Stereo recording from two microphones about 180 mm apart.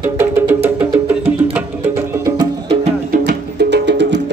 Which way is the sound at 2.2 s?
20° right (ahead or behind).